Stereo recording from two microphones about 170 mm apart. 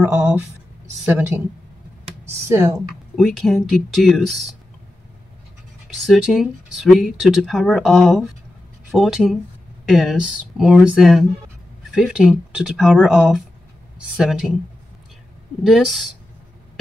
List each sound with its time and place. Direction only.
0.0 s speech: 15° right (ahead or behind)
3.2 s speech: centre (ahead or behind)
6.0 s speech: centre (ahead or behind)
15.6 s speech: centre (ahead or behind)